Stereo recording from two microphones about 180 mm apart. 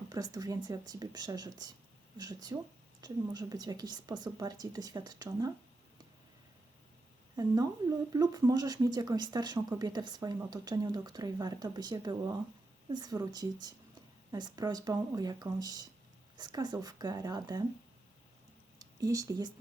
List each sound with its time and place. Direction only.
0.1 s speech: 20° right (ahead or behind)
7.3 s speech: 20° right (ahead or behind)
18.8 s speech: 20° right (ahead or behind)